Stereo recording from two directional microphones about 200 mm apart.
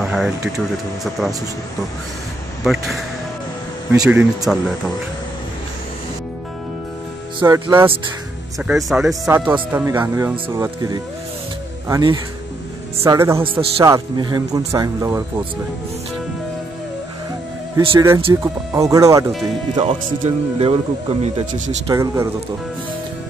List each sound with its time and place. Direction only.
0.0 s a sound: centre (ahead or behind)
2.6 s speech: centre (ahead or behind)
4.0 s speech: 5° right (ahead or behind)
7.4 s speech: 15° right (ahead or behind)
8.5 s speech: centre (ahead or behind)
13.4 s speech: 30° right (ahead or behind)
17.7 s speech: 15° right (ahead or behind)
19.8 s speech: 30° right (ahead or behind)
21.9 s speech: 15° right (ahead or behind)